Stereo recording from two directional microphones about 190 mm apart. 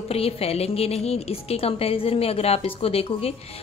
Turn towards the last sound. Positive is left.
turn(degrees=30)  # may be behind; listen again after turning